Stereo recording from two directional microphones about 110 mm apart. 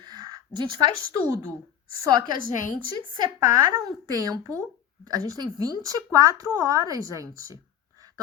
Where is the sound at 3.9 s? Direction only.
35° right (ahead or behind).